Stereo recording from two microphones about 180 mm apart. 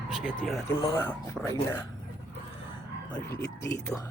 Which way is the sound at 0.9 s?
10° left (ahead or behind).